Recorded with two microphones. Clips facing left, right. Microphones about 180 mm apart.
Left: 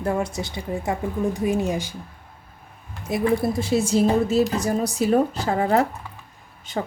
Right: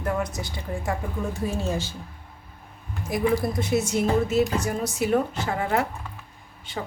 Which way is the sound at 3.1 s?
25° left (ahead or behind).